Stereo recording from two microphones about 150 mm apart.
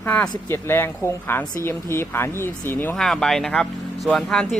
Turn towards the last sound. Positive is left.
turn(degrees=5)  # may be behind; listen again after turning